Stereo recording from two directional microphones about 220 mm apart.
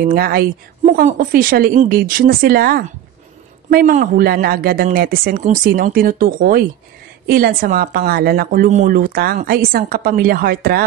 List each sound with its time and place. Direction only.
0.0 s a woman's voice: 40° right (ahead or behind)